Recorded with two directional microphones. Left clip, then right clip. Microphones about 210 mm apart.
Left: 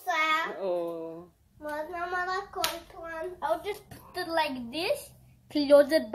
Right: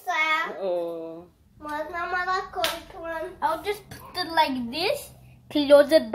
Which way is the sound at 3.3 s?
10° left (ahead or behind).